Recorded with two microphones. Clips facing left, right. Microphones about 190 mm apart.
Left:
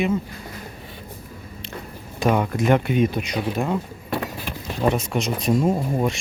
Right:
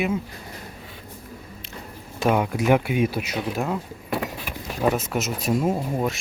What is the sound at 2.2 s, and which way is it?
Speech, 10° right (ahead or behind).